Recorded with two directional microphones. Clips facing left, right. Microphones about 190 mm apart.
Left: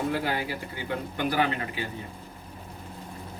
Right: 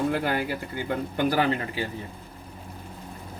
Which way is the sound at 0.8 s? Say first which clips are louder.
Right 4 dB; 40° right (ahead or behind).